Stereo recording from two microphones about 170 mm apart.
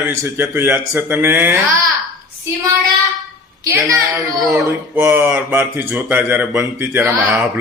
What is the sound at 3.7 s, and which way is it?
A man's voice, 15° right (ahead or behind).